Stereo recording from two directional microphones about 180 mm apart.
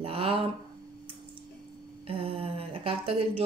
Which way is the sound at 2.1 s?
30° right (ahead or behind).